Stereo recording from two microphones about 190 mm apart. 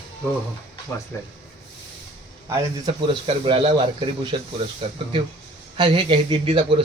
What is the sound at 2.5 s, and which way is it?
Speech, 25° right (ahead or behind).